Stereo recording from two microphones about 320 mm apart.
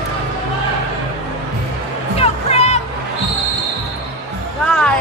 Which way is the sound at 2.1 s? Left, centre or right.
Centre.